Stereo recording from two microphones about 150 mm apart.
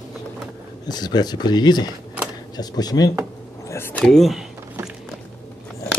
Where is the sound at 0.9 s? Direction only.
25° left (ahead or behind).